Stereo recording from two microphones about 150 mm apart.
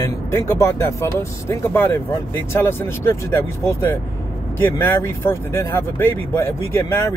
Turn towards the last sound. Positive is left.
turn(degrees=15)  # may be behind; listen again after turning